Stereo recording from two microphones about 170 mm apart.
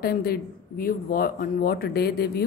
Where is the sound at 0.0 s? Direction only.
65° left (ahead or behind).